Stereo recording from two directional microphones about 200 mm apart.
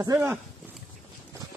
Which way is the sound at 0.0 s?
15° right (ahead or behind).